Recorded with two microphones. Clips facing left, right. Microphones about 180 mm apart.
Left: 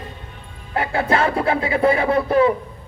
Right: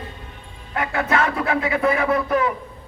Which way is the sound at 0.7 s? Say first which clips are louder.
Left 2 dB; 30° left (ahead or behind).